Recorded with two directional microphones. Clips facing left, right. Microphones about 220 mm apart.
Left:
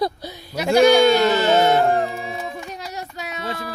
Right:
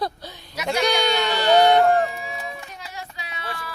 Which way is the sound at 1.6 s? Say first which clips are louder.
Right 4 dB; centre (ahead or behind).